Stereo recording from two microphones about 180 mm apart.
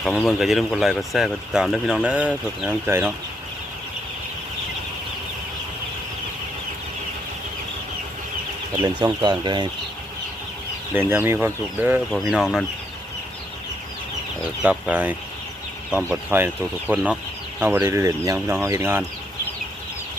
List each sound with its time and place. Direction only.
0.0 s speech: centre (ahead or behind)
9.0 s speech: 25° right (ahead or behind)
10.9 s speech: 10° right (ahead or behind)
14.6 s speech: 5° right (ahead or behind)